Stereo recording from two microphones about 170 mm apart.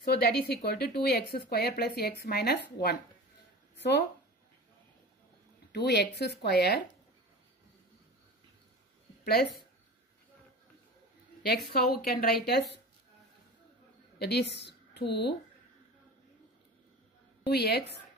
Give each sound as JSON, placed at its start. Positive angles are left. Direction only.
{"t": 0.0, "sound": "speech", "side_deg": 65}
{"t": 3.7, "sound": "speech", "side_deg": 85}
{"t": 5.7, "sound": "speech", "side_deg": 75}
{"t": 9.2, "sound": "speech", "side_deg": 65}
{"t": 11.4, "sound": "speech", "side_deg": 70}
{"t": 14.1, "sound": "a woman's voice", "side_deg": 75}
{"t": 17.5, "sound": "speech", "side_deg": 75}